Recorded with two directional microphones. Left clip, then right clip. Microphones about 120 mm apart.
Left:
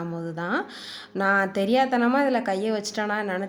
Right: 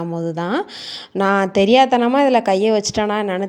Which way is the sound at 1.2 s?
60° right (ahead or behind).